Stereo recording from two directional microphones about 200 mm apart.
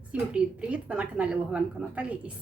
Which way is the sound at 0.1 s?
5° right (ahead or behind).